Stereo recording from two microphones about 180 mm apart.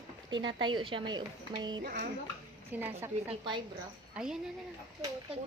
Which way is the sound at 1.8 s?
60° right (ahead or behind).